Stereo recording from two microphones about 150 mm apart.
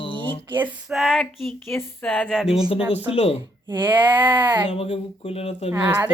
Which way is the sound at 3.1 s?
45° left (ahead or behind).